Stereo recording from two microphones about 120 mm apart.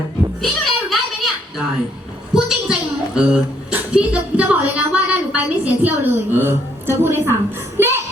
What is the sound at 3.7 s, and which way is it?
A woman's voice, 10° right (ahead or behind).